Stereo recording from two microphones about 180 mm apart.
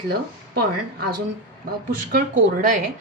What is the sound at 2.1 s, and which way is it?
Speech, 50° right (ahead or behind).